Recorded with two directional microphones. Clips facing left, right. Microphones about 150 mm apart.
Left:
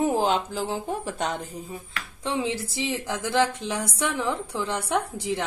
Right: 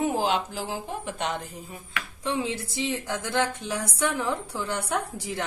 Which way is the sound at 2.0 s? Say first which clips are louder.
Even; 30° left (ahead or behind).